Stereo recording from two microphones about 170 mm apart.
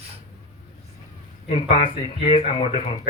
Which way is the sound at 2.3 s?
30° left (ahead or behind).